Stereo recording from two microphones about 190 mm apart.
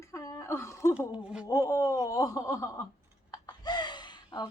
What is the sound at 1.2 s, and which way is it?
Speech, 5° right (ahead or behind).